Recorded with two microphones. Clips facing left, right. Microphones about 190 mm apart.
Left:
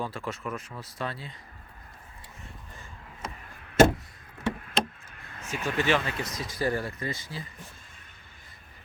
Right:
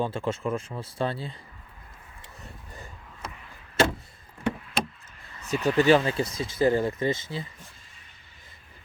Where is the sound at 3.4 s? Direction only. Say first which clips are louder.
Left 5 dB; 55° left (ahead or behind).